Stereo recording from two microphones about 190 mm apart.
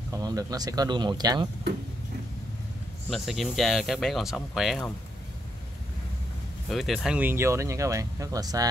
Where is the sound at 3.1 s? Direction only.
Centre (ahead or behind).